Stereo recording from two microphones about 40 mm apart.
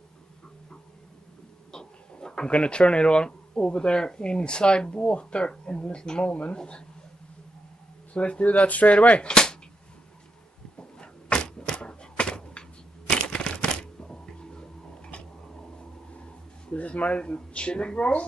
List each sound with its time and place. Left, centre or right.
1.7 s speech: centre
8.1 s speech: left
9.2 s speech: left
10.8 s door: left
13.1 s a sound: left
16.7 s speech: left